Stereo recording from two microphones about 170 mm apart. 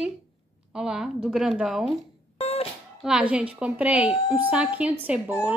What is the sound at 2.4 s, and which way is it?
Music, 40° left (ahead or behind).